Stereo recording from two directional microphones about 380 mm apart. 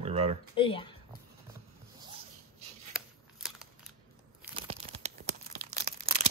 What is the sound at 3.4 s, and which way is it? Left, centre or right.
Scissors, centre.